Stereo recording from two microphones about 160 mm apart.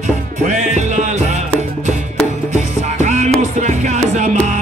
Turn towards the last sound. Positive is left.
turn(degrees=-50)  # may be behind; listen again after turning